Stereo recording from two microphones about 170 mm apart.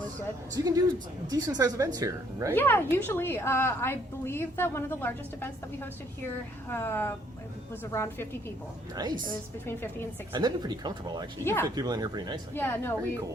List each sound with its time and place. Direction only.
0.5 s a woman's voice: 25° right (ahead or behind)
2.6 s a woman's voice: 10° left (ahead or behind)
9.0 s a woman's voice: 25° right (ahead or behind)
9.6 s a woman's voice: 15° left (ahead or behind)
10.3 s a woman's voice: 25° right (ahead or behind)
11.4 s a woman's voice: 15° left (ahead or behind)
11.7 s a woman's voice: 25° right (ahead or behind)
12.5 s a woman's voice: 15° left (ahead or behind)